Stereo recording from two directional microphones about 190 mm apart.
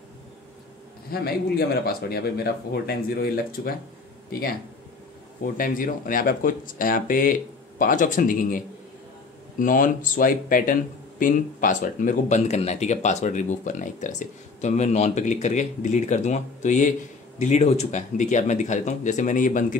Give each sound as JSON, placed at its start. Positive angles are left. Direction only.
{"t": 1.1, "sound": "speech", "side_deg": 55}
{"t": 5.4, "sound": "speech", "side_deg": 45}